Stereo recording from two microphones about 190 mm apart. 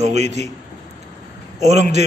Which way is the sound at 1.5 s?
35° right (ahead or behind).